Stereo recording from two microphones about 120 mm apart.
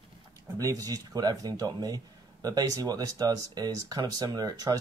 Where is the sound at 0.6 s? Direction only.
30° right (ahead or behind).